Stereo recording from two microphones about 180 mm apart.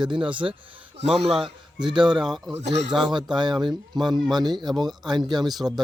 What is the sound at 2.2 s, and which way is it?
Speech, centre (ahead or behind).